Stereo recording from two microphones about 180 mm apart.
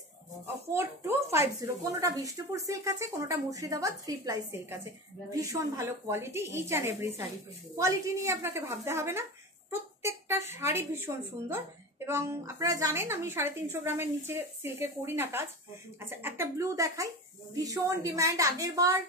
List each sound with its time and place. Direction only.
0.7 s speech: 15° right (ahead or behind)